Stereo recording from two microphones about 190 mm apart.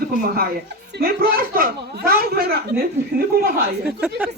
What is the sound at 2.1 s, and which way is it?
Speech, 55° right (ahead or behind).